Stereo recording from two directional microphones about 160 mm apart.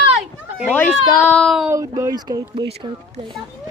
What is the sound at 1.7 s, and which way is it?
Speech, 20° right (ahead or behind).